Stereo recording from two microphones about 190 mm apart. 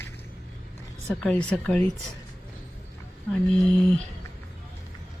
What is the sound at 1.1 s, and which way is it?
Speech, 5° left (ahead or behind).